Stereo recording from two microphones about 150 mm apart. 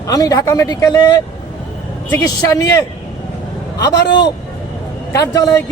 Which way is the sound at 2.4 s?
20° left (ahead or behind).